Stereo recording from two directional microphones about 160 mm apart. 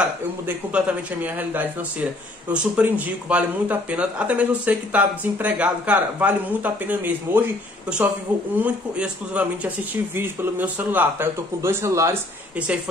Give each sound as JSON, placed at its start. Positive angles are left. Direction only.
{"t": 0.0, "sound": "speech", "side_deg": -5}
{"t": 12.5, "sound": "speech", "side_deg": -5}